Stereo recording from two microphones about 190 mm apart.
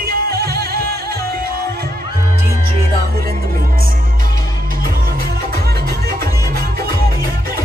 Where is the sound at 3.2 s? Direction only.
50° right (ahead or behind).